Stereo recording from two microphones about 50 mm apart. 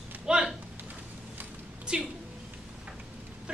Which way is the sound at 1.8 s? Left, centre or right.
Centre.